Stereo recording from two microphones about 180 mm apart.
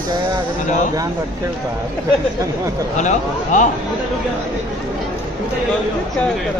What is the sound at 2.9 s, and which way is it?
Speech, 45° left (ahead or behind).